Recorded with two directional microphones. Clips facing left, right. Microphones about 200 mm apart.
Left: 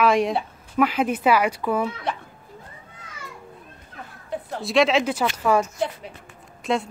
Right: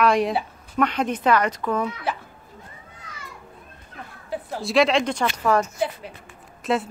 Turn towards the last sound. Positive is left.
turn(degrees=0)  # may be behind; listen again after turning